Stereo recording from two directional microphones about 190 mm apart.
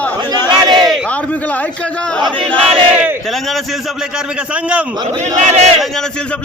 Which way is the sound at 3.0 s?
10° right (ahead or behind).